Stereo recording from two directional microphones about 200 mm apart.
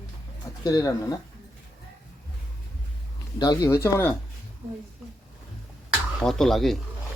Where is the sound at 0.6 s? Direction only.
20° left (ahead or behind).